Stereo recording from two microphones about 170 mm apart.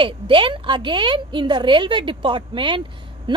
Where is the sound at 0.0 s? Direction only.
30° right (ahead or behind).